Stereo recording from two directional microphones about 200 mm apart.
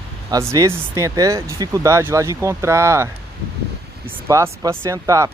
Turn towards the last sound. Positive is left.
turn(degrees=-15)  # may be behind; listen again after turning